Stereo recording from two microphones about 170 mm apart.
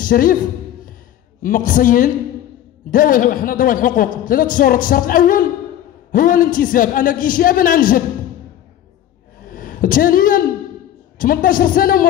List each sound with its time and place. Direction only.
0.0 s a man's voice: 55° left (ahead or behind)
1.4 s a man's voice: 50° left (ahead or behind)
9.5 s a sound: 55° left (ahead or behind)
11.1 s a man's voice: 55° left (ahead or behind)